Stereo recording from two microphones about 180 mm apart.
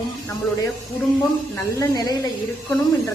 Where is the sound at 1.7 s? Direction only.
20° left (ahead or behind).